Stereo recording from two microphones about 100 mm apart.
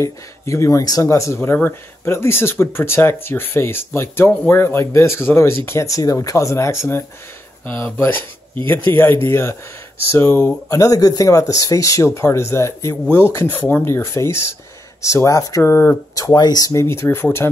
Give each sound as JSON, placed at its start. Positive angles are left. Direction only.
{"t": 0.0, "sound": "speech", "side_deg": 30}
{"t": 16.2, "sound": "speech", "side_deg": 40}
{"t": 16.8, "sound": "speech", "side_deg": 25}